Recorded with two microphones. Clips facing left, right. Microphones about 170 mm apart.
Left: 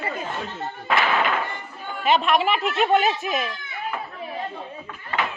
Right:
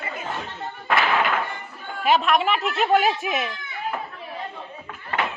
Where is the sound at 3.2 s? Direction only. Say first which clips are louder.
Even; 15° right (ahead or behind).